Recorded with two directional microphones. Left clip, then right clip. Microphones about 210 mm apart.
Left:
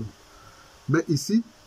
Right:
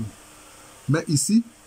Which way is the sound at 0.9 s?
10° right (ahead or behind).